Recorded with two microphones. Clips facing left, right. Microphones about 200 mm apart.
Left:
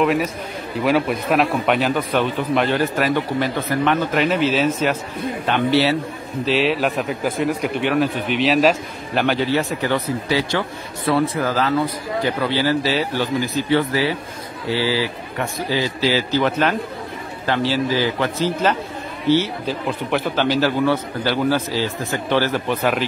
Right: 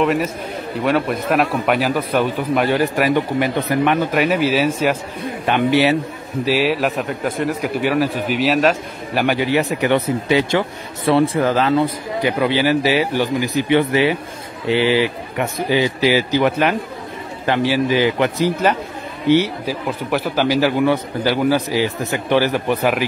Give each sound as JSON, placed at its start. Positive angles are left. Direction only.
{"t": 0.0, "sound": "a man's voice", "side_deg": 0}
{"t": 6.4, "sound": "a man's voice", "side_deg": -5}
{"t": 9.2, "sound": "a man's voice", "side_deg": -15}